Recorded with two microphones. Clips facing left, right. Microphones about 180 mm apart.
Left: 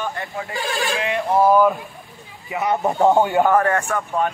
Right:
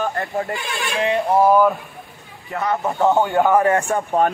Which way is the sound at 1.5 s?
Centre (ahead or behind).